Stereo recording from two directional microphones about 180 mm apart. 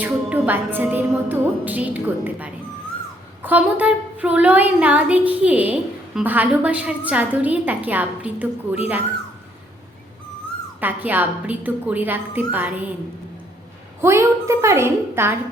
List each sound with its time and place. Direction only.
0.0 s a woman's voice: 10° right (ahead or behind)
10.8 s a woman's voice: 10° right (ahead or behind)
14.0 s a woman's voice: 15° right (ahead or behind)